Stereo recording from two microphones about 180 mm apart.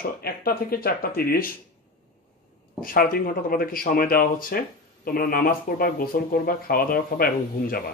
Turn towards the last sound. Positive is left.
turn(degrees=55)  # may be behind; listen again after turning